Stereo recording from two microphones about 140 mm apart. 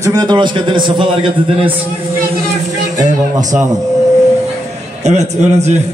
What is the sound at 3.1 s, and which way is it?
Speech, 60° right (ahead or behind).